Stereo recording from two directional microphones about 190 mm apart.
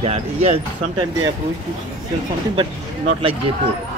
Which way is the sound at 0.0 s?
35° right (ahead or behind).